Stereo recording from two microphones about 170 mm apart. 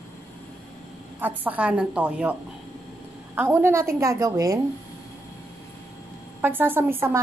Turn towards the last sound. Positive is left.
turn(degrees=-15)  # may be behind; listen again after turning